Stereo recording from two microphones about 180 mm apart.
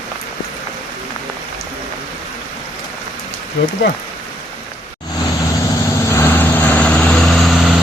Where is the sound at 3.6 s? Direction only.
70° left (ahead or behind).